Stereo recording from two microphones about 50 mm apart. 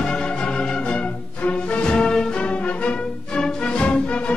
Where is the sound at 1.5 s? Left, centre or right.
Left.